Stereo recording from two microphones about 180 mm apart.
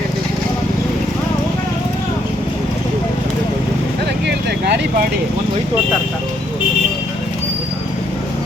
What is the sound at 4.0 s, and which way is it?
Vehicle, 65° right (ahead or behind).